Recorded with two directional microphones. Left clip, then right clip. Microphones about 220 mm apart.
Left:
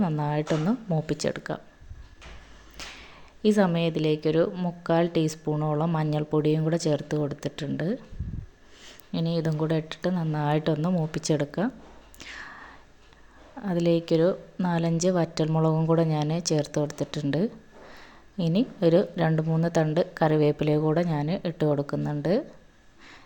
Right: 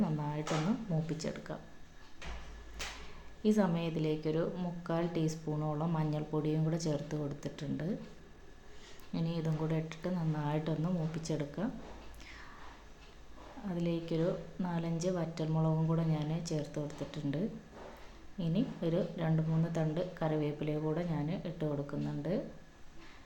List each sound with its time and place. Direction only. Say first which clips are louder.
0.0 s a woman's voice: left 10 dB; 40° left (ahead or behind)
3.4 s a woman's voice: left 9 dB; 35° left (ahead or behind)
12.2 s whispering: left 15 dB; 40° left (ahead or behind)
13.7 s a woman's voice: left 13 dB; 40° left (ahead or behind)